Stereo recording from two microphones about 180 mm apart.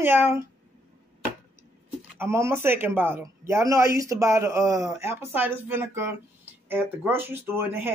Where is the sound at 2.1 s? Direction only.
15° right (ahead or behind).